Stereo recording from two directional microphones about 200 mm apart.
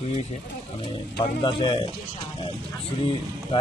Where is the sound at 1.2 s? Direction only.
25° left (ahead or behind).